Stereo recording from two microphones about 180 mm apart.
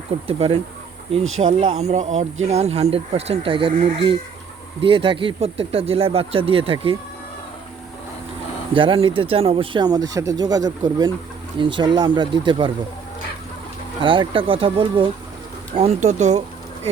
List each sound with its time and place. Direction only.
0.3 s speech: 35° right (ahead or behind)
8.7 s speech: 30° right (ahead or behind)
14.0 s speech: 30° right (ahead or behind)